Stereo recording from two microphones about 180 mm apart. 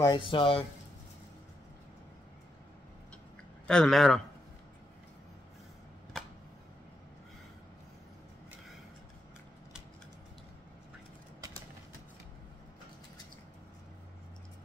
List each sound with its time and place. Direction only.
0.0 s speech: 25° left (ahead or behind)
3.6 s speech: 5° left (ahead or behind)